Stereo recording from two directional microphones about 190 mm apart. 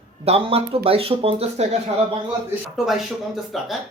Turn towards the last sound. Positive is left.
turn(degrees=0)  # may be behind; listen again after turning